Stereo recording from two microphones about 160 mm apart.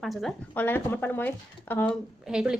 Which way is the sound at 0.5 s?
15° left (ahead or behind).